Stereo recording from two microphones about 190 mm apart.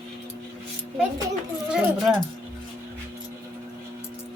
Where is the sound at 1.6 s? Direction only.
5° right (ahead or behind).